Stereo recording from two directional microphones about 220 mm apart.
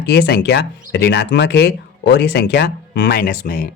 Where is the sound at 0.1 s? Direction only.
50° left (ahead or behind).